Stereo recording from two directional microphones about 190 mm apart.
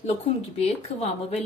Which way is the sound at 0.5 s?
30° left (ahead or behind).